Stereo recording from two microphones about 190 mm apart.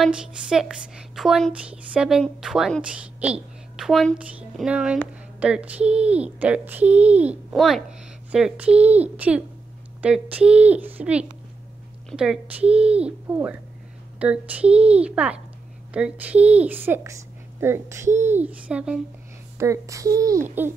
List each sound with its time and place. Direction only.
0.0 s a woman's voice: 5° right (ahead or behind)
19.6 s a child's voice: 15° right (ahead or behind)